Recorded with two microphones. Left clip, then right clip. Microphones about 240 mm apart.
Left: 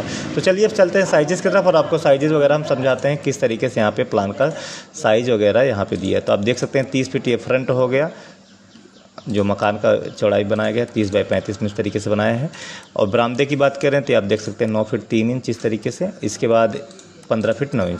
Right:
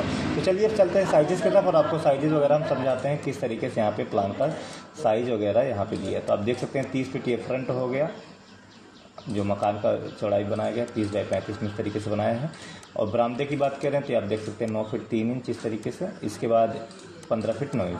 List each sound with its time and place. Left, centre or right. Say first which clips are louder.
0.4 s a man's voice: left 7 dB; left
9.3 s a man's voice: left 7 dB; left